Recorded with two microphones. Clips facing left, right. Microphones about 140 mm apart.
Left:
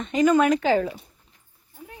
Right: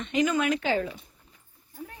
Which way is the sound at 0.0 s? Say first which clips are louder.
Left 6 dB; 40° left (ahead or behind).